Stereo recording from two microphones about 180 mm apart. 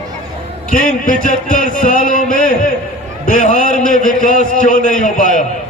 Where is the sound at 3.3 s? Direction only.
45° left (ahead or behind).